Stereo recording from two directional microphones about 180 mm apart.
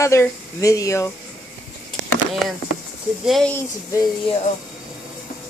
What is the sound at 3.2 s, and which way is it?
Speech, centre (ahead or behind).